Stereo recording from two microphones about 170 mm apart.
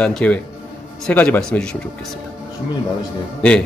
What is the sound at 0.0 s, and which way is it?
Speech, 5° left (ahead or behind).